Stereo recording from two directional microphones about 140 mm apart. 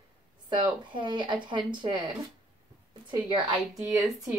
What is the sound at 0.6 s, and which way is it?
Speech, 35° right (ahead or behind).